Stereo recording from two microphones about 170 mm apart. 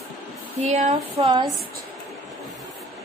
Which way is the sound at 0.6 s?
40° right (ahead or behind).